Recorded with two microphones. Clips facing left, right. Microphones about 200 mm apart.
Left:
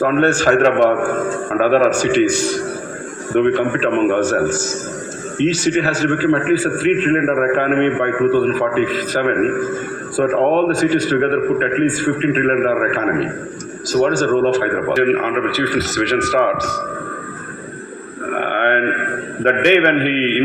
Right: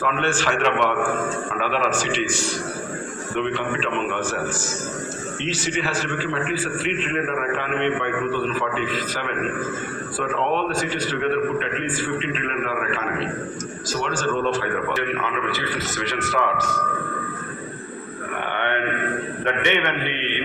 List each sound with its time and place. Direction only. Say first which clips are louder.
0.0 s a man's voice: left 9 dB; 40° left (ahead or behind)
3.3 s a man's voice: left 10 dB; 50° left (ahead or behind)
14.6 s a man's voice: left 9 dB; 60° left (ahead or behind)
18.3 s groan: left 8 dB; 60° left (ahead or behind)
19.5 s a man's voice: left 10 dB; 65° left (ahead or behind)